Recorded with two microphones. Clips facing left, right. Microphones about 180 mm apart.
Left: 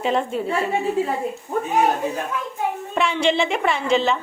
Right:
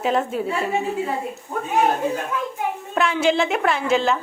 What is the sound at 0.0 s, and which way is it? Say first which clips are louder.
Speech: even; 5° right (ahead or behind).